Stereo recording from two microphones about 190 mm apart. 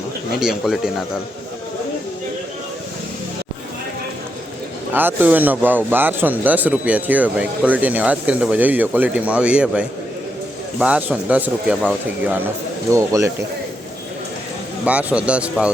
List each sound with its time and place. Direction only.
0.3 s speech: centre (ahead or behind)
4.9 s a man's voice: 10° right (ahead or behind)
12.9 s a man's voice: 15° right (ahead or behind)
14.8 s a man's voice: 5° right (ahead or behind)